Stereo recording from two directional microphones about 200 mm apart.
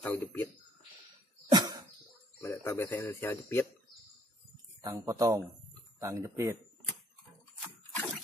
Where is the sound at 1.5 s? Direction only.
20° right (ahead or behind).